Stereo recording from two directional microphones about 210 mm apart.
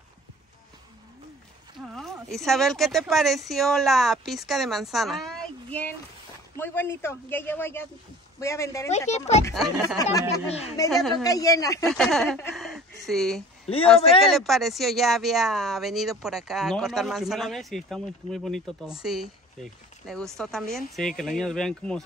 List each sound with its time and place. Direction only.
1.8 s a man's voice: centre (ahead or behind)
9.1 s speech: 30° left (ahead or behind)
9.5 s speech: centre (ahead or behind)
11.2 s a man's voice: 15° left (ahead or behind)
11.8 s speech: centre (ahead or behind)
12.5 s a sound: centre (ahead or behind)
13.8 s speech: centre (ahead or behind)